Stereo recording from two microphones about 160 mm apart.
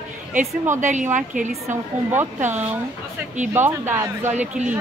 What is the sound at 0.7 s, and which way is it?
Speech, 50° right (ahead or behind).